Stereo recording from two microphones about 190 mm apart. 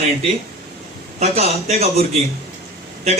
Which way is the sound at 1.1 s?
35° right (ahead or behind).